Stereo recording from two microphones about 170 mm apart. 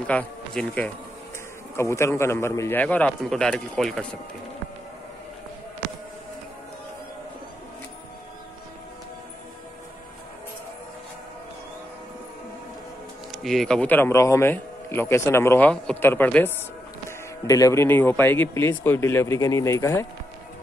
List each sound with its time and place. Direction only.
0.0 s speech: 5° left (ahead or behind)
13.3 s speech: centre (ahead or behind); by 20.1 s 15° left (ahead or behind)